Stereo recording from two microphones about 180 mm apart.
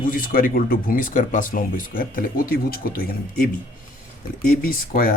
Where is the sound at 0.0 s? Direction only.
50° left (ahead or behind).